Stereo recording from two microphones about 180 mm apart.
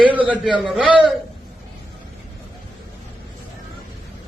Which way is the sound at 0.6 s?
5° right (ahead or behind).